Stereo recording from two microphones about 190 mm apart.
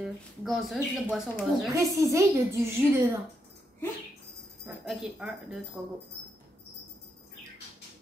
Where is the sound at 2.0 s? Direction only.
15° right (ahead or behind).